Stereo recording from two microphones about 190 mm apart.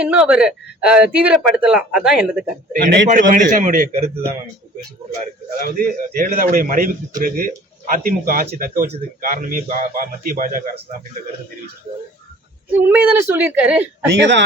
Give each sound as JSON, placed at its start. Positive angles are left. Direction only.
{"t": 0.0, "sound": "speech", "side_deg": -5}
{"t": 3.1, "sound": "a man's voice", "side_deg": -45}
{"t": 5.5, "sound": "a man's voice", "side_deg": -50}
{"t": 12.7, "sound": "a woman's voice", "side_deg": -10}
{"t": 14.1, "sound": "speech", "side_deg": -70}